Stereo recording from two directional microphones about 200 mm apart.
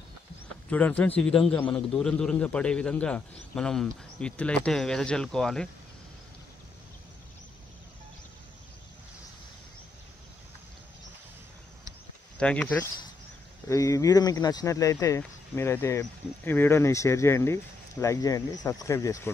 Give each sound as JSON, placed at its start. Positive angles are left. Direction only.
{"t": 0.7, "sound": "speech", "side_deg": 10}
{"t": 12.4, "sound": "speech", "side_deg": 5}